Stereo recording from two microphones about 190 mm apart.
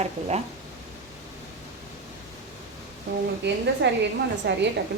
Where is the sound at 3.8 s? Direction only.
65° right (ahead or behind).